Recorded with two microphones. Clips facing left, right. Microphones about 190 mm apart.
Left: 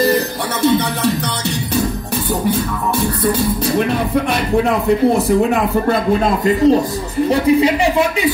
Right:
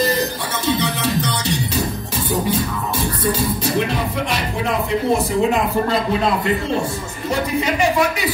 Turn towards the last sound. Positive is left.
turn(degrees=40)  # may be behind; listen again after turning